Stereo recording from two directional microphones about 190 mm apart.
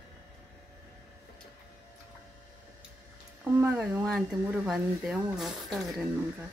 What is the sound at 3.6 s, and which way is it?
Speech, 10° right (ahead or behind).